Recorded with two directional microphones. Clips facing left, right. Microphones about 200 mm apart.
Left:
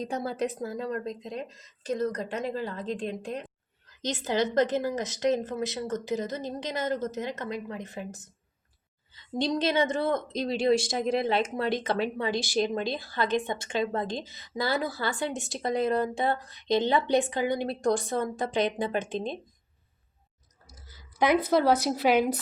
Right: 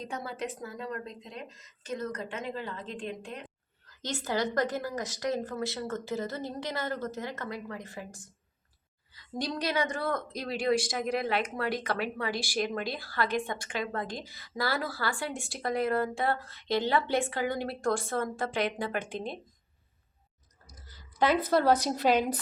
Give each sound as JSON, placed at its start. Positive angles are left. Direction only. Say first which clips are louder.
{"t": 0.0, "sound": "speech", "louder": "left 6 dB", "side_deg": 35}
{"t": 3.8, "sound": "speech", "louder": "left 3 dB", "side_deg": 20}
{"t": 20.8, "sound": "a sound", "louder": "left 2 dB", "side_deg": 10}
{"t": 21.5, "sound": "a woman's voice", "louder": "left 2 dB", "side_deg": 10}